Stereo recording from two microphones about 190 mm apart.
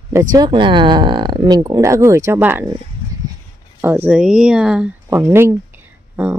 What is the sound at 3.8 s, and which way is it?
Speech, 10° right (ahead or behind).